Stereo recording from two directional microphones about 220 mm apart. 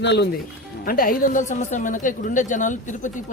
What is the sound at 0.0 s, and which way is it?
Speech, 55° left (ahead or behind).